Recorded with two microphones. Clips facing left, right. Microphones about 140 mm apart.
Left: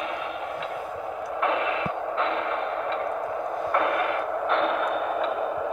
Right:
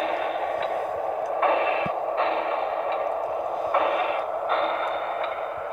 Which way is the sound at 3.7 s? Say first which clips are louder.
Right 1 dB; 20° right (ahead or behind).